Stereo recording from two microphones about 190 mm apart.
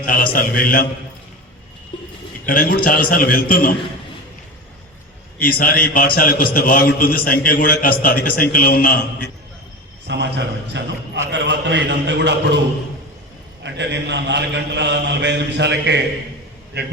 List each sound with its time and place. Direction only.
0.0 s a man's voice: 50° left (ahead or behind)
1.9 s a sound: 25° left (ahead or behind)
2.5 s a man's voice: 50° left (ahead or behind)
5.4 s a man's voice: 50° left (ahead or behind)
10.1 s a man's voice: 65° right (ahead or behind)